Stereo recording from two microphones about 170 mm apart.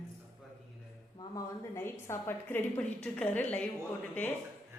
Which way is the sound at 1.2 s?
20° left (ahead or behind).